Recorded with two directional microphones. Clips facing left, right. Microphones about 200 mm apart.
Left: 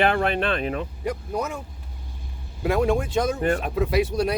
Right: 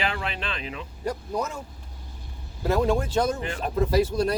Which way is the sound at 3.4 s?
50° left (ahead or behind).